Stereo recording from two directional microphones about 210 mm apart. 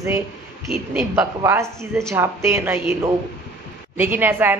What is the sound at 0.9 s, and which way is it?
A woman's voice, 5° right (ahead or behind).